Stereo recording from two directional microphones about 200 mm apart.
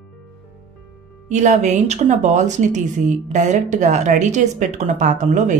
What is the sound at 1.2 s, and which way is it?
A woman's voice, 35° right (ahead or behind).